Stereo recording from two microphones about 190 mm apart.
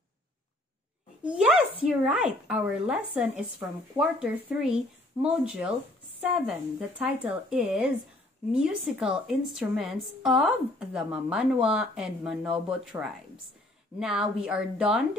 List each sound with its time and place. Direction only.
1.2 s a woman's voice: 5° right (ahead or behind)